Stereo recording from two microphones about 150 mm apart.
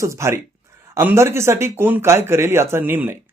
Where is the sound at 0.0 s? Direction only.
20° right (ahead or behind).